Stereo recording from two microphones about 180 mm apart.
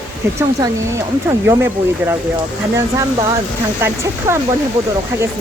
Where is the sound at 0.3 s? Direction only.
15° right (ahead or behind).